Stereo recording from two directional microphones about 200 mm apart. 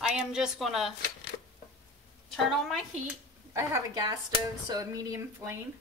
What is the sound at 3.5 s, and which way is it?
Speech, 15° right (ahead or behind).